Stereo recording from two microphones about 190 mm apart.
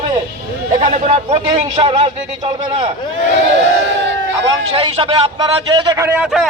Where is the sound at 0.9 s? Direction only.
40° right (ahead or behind).